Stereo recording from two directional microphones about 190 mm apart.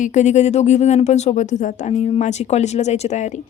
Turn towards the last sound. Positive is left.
turn(degrees=40)  # may be behind; listen again after turning